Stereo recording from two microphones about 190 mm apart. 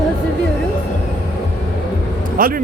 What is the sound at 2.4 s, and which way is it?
Speech, 50° right (ahead or behind).